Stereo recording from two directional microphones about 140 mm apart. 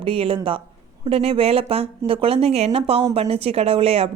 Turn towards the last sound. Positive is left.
turn(degrees=-45)  # may be behind; listen again after turning